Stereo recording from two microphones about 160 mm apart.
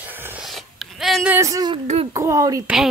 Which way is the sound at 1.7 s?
40° right (ahead or behind).